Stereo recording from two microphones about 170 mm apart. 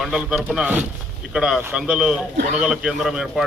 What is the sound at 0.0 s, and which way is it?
A man's voice, centre (ahead or behind).